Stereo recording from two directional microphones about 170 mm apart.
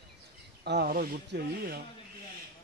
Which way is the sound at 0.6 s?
70° right (ahead or behind).